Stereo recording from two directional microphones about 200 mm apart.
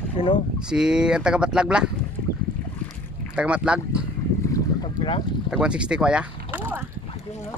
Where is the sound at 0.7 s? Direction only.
5° right (ahead or behind).